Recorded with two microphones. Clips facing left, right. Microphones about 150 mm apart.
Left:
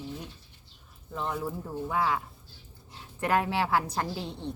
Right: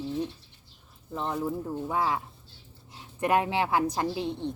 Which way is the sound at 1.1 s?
25° right (ahead or behind).